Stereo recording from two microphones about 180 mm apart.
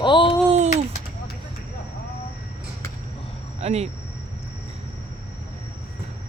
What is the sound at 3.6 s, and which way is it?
Cricket, 35° right (ahead or behind).